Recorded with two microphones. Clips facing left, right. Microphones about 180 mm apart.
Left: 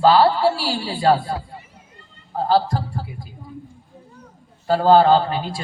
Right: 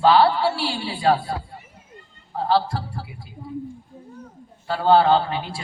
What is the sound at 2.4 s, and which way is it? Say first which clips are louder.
Speech: left 2 dB; 40° left (ahead or behind).